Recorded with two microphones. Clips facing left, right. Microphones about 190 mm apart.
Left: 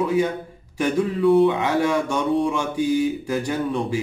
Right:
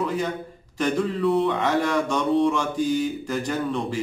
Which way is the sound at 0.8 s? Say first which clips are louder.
Left 3 dB; 5° left (ahead or behind).